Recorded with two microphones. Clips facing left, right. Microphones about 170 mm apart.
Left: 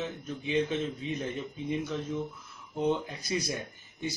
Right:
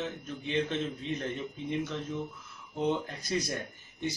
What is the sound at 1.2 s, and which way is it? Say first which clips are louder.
Speech: left 1 dB; 5° left (ahead or behind).